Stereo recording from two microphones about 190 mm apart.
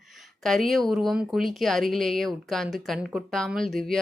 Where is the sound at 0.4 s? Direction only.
Centre (ahead or behind).